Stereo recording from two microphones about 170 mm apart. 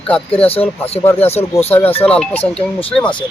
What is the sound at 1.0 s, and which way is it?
Speech, 10° left (ahead or behind).